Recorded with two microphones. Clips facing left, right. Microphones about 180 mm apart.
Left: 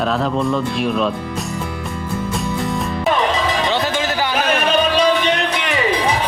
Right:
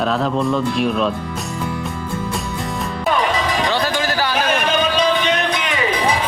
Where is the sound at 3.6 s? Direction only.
20° left (ahead or behind).